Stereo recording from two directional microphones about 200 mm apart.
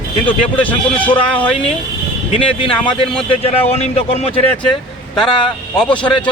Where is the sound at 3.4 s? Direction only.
30° left (ahead or behind).